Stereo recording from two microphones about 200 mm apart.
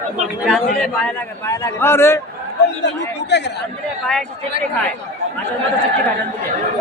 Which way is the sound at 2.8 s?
60° left (ahead or behind).